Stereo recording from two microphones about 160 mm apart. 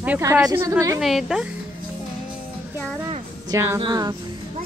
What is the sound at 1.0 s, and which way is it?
Speech, centre (ahead or behind).